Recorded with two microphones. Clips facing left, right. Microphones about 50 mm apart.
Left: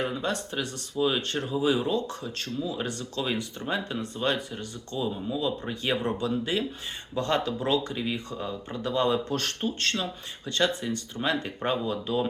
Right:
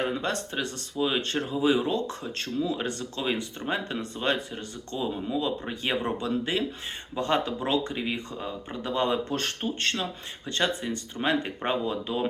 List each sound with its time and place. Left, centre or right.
0.0 s speech: right
1.0 s speech: right
7.2 s speech: right